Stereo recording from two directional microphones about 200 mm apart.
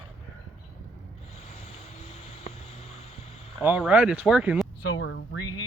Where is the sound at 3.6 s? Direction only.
5° right (ahead or behind).